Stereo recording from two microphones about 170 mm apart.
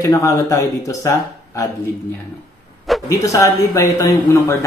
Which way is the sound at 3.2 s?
20° left (ahead or behind).